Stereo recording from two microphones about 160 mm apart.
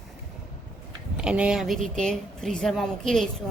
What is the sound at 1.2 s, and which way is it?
Speech, 5° right (ahead or behind).